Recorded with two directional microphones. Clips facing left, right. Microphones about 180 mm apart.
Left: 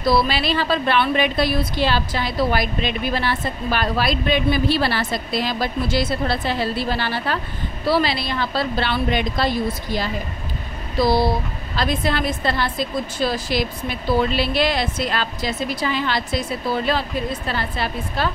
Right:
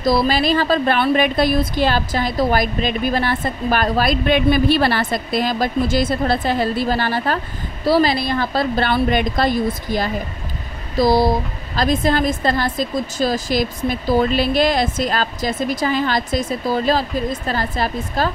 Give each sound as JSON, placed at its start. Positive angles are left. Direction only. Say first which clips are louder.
{"t": 0.0, "sound": "a woman's voice", "louder": "right 3 dB", "side_deg": -40}